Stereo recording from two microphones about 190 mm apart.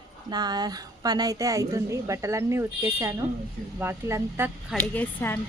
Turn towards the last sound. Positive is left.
turn(degrees=10)  # may be behind; listen again after turning